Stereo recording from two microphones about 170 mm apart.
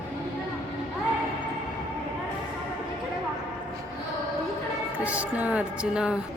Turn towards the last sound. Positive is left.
turn(degrees=-5)  # may be behind; listen again after turning